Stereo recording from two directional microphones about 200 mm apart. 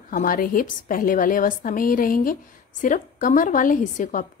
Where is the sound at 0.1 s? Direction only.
45° left (ahead or behind).